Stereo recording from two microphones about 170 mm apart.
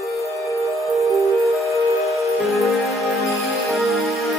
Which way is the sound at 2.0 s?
Centre (ahead or behind).